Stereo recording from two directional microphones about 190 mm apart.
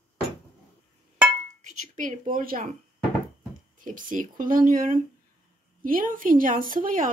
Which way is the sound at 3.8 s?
45° right (ahead or behind).